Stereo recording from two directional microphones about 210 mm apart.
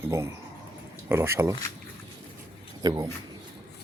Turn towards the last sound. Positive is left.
turn(degrees=-20)  # may be behind; listen again after turning